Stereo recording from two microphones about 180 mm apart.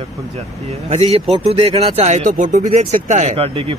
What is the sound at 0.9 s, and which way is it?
Speech, 35° right (ahead or behind).